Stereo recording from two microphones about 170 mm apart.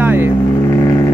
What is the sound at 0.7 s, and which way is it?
Vehicle, 20° left (ahead or behind).